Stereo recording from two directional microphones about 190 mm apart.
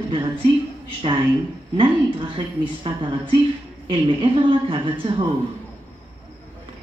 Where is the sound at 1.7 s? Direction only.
25° right (ahead or behind).